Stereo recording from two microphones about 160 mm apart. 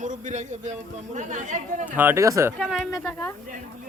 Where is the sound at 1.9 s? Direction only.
15° right (ahead or behind).